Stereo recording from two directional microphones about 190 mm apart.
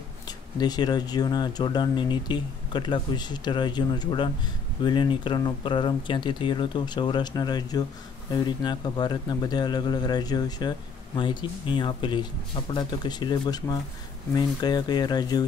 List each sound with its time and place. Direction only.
0.6 s speech: 20° left (ahead or behind)